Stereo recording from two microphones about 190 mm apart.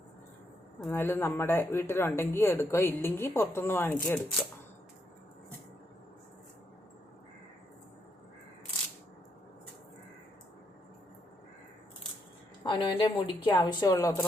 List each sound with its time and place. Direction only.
0.8 s speech: 10° left (ahead or behind)
12.6 s a woman's voice: 25° left (ahead or behind)